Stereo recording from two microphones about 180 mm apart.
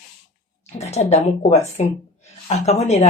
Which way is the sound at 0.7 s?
35° left (ahead or behind).